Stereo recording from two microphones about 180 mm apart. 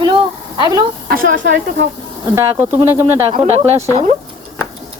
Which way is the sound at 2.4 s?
15° right (ahead or behind).